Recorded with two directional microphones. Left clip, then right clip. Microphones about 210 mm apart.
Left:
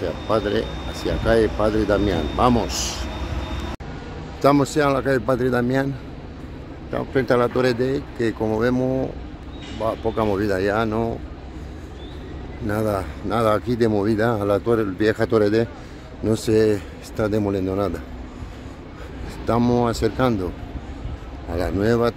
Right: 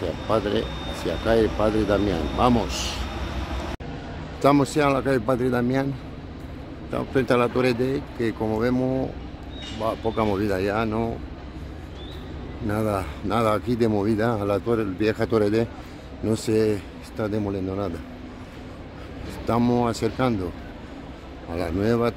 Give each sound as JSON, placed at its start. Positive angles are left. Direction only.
{"t": 0.3, "sound": "a man's voice", "side_deg": 0}
{"t": 4.4, "sound": "a man's voice", "side_deg": 0}
{"t": 6.9, "sound": "speech", "side_deg": 0}
{"t": 12.6, "sound": "speech", "side_deg": 5}
{"t": 19.4, "sound": "speech", "side_deg": 10}
{"t": 21.5, "sound": "speech", "side_deg": 10}